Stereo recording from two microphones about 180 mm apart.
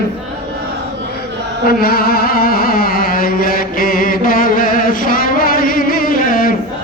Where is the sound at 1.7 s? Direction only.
55° left (ahead or behind).